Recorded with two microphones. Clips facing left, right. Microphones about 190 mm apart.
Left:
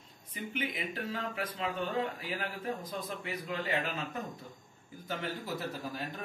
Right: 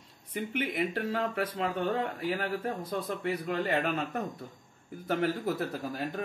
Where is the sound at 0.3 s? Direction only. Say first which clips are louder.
Right 5 dB; 65° right (ahead or behind).